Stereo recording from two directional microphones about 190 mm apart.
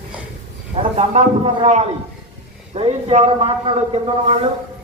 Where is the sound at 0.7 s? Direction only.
35° right (ahead or behind).